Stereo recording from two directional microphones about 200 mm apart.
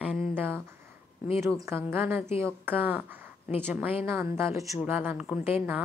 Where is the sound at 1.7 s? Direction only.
10° right (ahead or behind).